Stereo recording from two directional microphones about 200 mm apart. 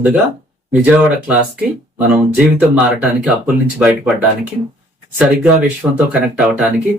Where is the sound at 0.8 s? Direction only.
10° right (ahead or behind).